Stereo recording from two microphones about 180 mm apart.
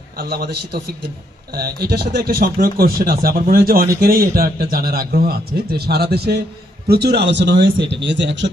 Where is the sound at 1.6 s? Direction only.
60° right (ahead or behind).